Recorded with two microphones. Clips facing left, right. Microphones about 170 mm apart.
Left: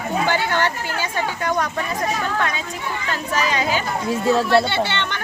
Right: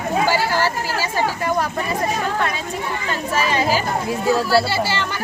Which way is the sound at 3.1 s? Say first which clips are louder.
Right 1 dB; centre (ahead or behind).